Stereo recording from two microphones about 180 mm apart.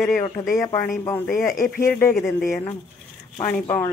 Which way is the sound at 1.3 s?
50° left (ahead or behind).